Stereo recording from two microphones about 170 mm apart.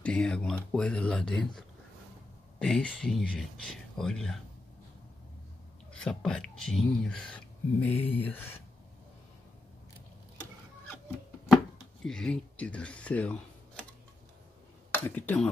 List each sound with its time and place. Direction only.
0.0 s speech: 5° left (ahead or behind)
5.9 s speech: 5° left (ahead or behind)
11.5 s a sound: 5° left (ahead or behind)
14.9 s speech: 10° left (ahead or behind)